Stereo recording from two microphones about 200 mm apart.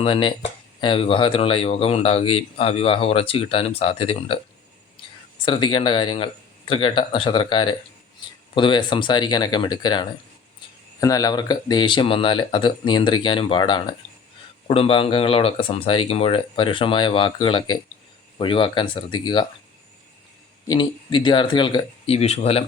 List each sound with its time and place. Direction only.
0.0 s speech: 25° left (ahead or behind)
5.5 s speech: 25° left (ahead or behind)
20.7 s speech: 25° left (ahead or behind)